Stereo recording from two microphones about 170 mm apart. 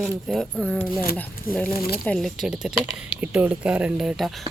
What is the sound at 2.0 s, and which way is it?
Speech, centre (ahead or behind).